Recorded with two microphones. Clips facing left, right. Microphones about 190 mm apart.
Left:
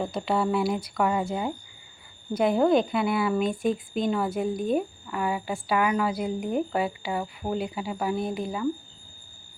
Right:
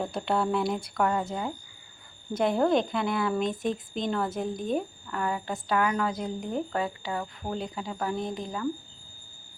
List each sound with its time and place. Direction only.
0.0 s a woman's voice: centre (ahead or behind)